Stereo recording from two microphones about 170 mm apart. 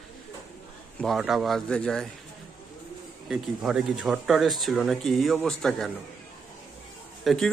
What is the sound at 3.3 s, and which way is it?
Speech, 5° right (ahead or behind).